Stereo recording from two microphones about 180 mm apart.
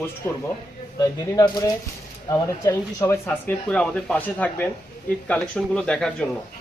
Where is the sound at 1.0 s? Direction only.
20° left (ahead or behind).